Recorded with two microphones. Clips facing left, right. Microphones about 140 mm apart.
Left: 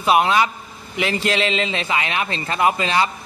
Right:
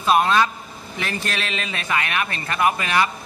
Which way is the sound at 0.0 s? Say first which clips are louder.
Left 1 dB; 15° left (ahead or behind).